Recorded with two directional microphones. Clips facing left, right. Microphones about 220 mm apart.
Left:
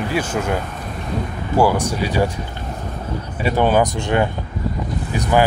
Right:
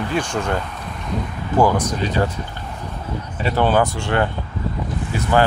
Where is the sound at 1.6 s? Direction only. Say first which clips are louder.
Even; 10° left (ahead or behind).